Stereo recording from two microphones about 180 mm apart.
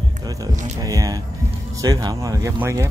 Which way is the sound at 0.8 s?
20° right (ahead or behind).